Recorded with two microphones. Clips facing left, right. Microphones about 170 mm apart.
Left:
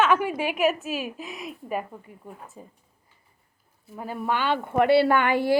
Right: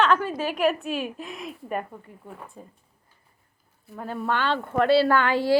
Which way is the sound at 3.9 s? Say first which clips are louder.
Even; 10° left (ahead or behind).